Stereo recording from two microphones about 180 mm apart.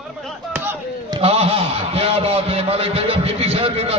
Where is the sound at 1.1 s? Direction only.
35° right (ahead or behind).